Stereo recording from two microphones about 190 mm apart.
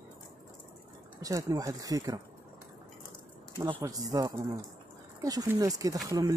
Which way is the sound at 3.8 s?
20° right (ahead or behind).